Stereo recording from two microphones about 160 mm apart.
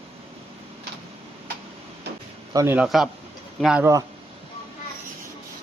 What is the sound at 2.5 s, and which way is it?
Speech, 20° right (ahead or behind).